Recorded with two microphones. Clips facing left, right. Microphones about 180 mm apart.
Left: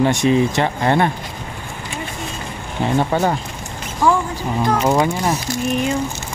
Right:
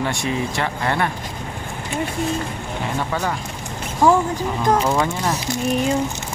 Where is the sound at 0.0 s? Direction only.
20° left (ahead or behind).